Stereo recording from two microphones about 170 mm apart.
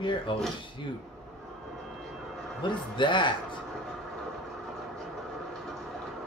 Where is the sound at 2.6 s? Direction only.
30° left (ahead or behind).